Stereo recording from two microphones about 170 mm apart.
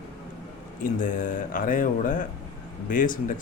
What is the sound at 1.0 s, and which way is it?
Speech, 50° left (ahead or behind).